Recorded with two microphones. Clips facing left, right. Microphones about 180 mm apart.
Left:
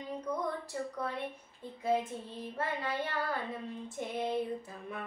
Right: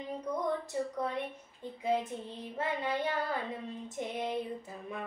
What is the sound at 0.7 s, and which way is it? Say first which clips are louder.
Child singing: right 3 dB; 20° right (ahead or behind).